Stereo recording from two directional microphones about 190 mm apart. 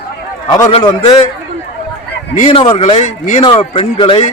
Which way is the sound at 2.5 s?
25° left (ahead or behind).